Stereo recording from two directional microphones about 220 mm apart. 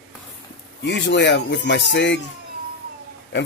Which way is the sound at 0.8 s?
50° left (ahead or behind).